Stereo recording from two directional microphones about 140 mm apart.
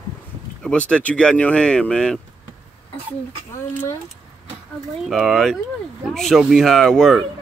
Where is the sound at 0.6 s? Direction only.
10° left (ahead or behind).